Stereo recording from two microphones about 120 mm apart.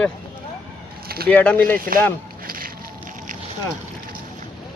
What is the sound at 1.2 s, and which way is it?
Speech, 10° left (ahead or behind).